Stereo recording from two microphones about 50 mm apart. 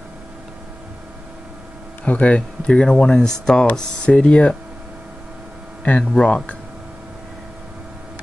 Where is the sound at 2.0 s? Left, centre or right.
Left.